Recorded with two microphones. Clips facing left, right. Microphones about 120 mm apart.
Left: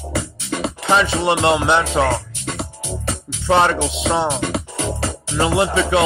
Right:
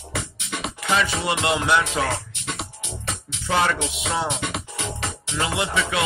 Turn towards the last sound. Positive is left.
turn(degrees=30)  # may be behind; listen again after turning